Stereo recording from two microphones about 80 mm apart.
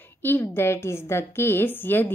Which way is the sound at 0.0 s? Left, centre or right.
Left.